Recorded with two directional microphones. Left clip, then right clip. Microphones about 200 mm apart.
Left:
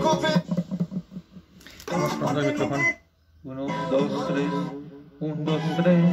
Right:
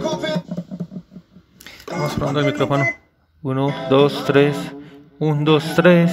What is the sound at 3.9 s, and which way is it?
Speech, 55° right (ahead or behind).